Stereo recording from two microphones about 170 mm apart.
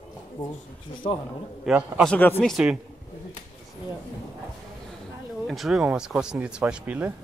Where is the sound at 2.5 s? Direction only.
5° right (ahead or behind).